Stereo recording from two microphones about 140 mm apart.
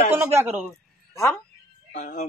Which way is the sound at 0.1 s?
15° right (ahead or behind).